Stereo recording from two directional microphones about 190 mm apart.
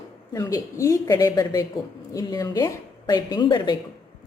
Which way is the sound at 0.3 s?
15° left (ahead or behind).